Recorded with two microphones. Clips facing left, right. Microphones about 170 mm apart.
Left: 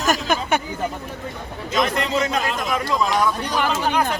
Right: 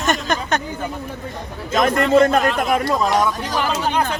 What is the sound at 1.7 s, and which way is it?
A man's voice, 50° right (ahead or behind).